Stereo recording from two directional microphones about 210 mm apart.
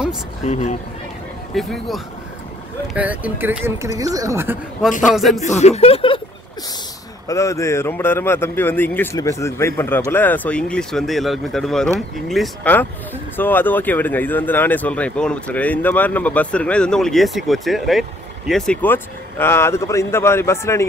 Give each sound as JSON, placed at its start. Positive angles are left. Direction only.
{"t": 0.4, "sound": "speech", "side_deg": 35}
{"t": 1.5, "sound": "speech", "side_deg": 0}
{"t": 5.0, "sound": "speech", "side_deg": 0}
{"t": 5.4, "sound": "speech", "side_deg": 30}
{"t": 7.2, "sound": "speech", "side_deg": 15}